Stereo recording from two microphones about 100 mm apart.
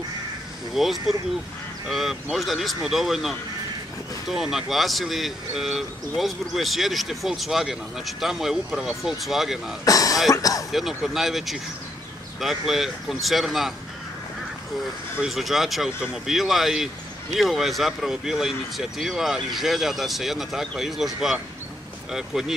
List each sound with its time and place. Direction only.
0.7 s speech: centre (ahead or behind)
9.8 s speech: 35° left (ahead or behind)
10.7 s speech: 5° right (ahead or behind)
15.1 s speech: centre (ahead or behind)